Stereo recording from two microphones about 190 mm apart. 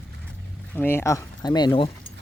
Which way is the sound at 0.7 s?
10° left (ahead or behind).